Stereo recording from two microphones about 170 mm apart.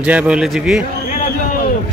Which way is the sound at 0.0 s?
10° right (ahead or behind).